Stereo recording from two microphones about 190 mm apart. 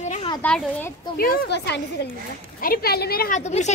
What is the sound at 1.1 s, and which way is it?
A woman's voice, 50° left (ahead or behind).